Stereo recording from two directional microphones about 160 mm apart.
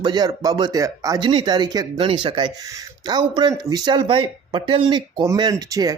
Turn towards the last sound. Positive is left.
turn(degrees=-20)  # may be behind; listen again after turning